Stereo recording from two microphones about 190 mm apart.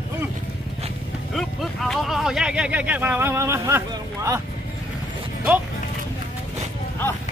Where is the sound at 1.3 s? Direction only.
Centre (ahead or behind); by 4.4 s 15° right (ahead or behind).